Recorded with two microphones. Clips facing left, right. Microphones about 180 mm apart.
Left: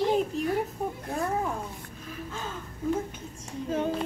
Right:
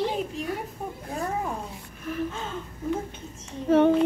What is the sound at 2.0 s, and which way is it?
Gasp, 70° right (ahead or behind).